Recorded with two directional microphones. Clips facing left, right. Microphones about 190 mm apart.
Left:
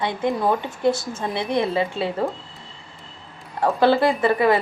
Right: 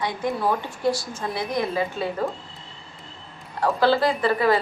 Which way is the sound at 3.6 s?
20° left (ahead or behind).